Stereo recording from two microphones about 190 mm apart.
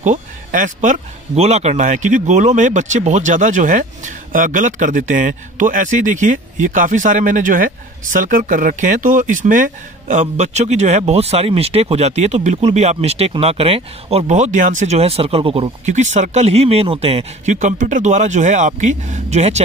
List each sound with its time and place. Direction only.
0.0 s speech: 40° right (ahead or behind)